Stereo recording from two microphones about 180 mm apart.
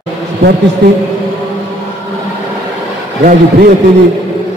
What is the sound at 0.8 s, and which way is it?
Speech, 70° right (ahead or behind).